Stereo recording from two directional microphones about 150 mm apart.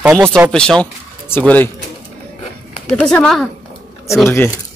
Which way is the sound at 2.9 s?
5° left (ahead or behind).